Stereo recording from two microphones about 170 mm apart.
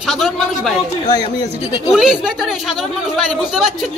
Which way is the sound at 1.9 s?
Centre (ahead or behind).